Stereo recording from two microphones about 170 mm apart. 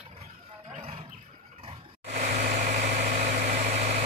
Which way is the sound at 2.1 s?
45° right (ahead or behind).